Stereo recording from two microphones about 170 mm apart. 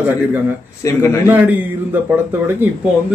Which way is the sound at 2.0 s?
10° right (ahead or behind).